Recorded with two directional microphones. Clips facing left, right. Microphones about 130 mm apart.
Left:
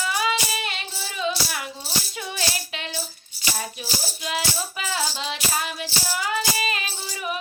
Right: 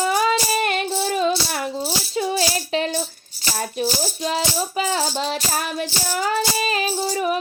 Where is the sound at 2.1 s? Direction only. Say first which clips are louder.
Right 13 dB; 35° right (ahead or behind).